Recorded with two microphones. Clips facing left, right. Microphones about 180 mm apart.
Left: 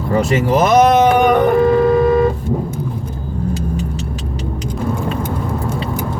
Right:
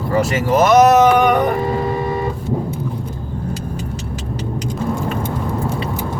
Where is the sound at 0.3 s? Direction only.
30° left (ahead or behind).